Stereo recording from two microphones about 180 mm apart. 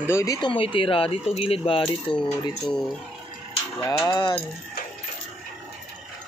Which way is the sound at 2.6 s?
Centre (ahead or behind).